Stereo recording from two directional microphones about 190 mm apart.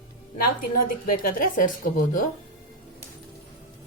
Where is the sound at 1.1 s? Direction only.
45° left (ahead or behind).